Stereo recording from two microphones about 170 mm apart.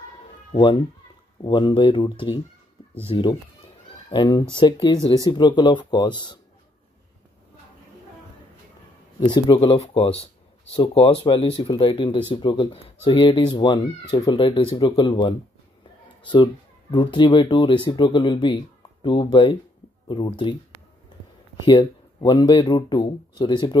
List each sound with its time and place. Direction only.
1.4 s speech: 30° left (ahead or behind)
9.2 s speech: 25° left (ahead or behind)
16.9 s speech: 30° left (ahead or behind)
21.6 s speech: 25° left (ahead or behind)